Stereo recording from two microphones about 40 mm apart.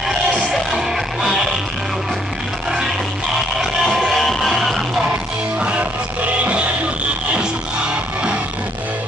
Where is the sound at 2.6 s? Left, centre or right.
Centre.